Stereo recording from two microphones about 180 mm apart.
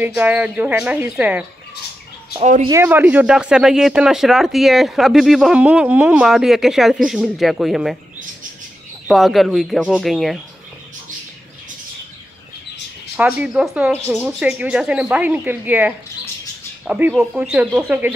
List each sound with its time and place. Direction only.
0.0 s speech: 10° right (ahead or behind)
2.4 s speech: 40° right (ahead or behind)
2.7 s speech: 10° right (ahead or behind)
9.0 s speech: centre (ahead or behind)
13.1 s speech: 5° right (ahead or behind)